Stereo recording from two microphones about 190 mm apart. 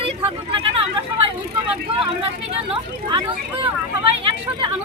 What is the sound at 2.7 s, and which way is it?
Speech, 25° right (ahead or behind).